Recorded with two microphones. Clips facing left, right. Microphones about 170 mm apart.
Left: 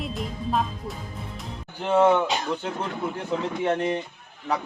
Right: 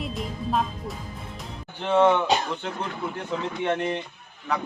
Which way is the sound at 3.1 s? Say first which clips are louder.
Left 1 dB; 30° left (ahead or behind).